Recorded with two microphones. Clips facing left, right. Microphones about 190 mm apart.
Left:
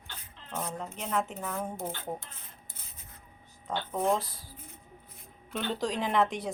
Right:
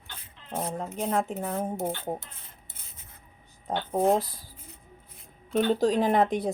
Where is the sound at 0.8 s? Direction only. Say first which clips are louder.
Right 5 dB; 35° right (ahead or behind).